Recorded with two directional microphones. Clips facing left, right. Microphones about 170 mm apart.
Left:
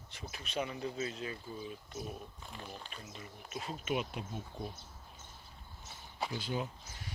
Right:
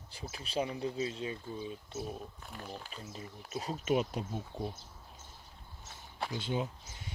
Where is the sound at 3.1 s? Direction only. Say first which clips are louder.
Right 5 dB; 35° right (ahead or behind).